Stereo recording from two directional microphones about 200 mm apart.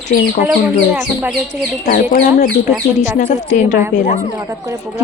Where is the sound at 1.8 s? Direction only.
45° left (ahead or behind).